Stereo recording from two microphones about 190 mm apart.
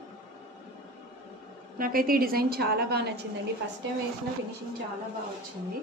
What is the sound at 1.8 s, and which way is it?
A woman's voice, 50° right (ahead or behind).